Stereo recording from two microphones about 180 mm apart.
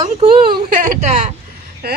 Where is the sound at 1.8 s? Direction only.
60° right (ahead or behind).